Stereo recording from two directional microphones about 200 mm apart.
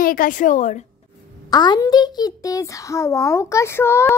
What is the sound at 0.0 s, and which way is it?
Speech, 45° left (ahead or behind).